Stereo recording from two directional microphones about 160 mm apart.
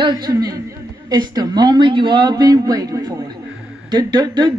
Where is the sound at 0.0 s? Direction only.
25° right (ahead or behind).